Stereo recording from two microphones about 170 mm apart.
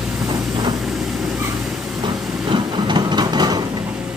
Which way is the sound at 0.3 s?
25° right (ahead or behind).